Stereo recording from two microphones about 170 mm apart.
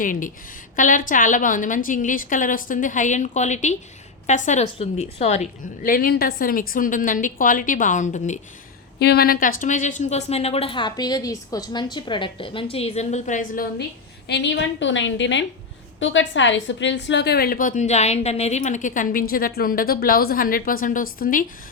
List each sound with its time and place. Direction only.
0.0 s a woman's voice: 50° left (ahead or behind)
5.9 s a woman's voice: 60° left (ahead or behind)
9.0 s speech: 70° left (ahead or behind); by 13.7 s 55° left (ahead or behind)
14.3 s a woman's voice: 90° left; by 21.4 s 55° left (ahead or behind)